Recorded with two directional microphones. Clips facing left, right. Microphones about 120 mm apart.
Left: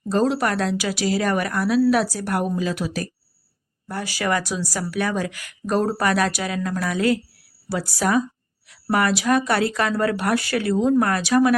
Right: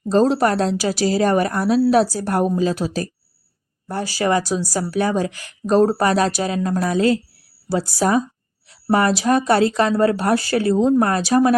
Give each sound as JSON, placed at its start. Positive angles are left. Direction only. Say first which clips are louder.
{"t": 0.0, "sound": "a woman's voice", "louder": "right 5 dB", "side_deg": -30}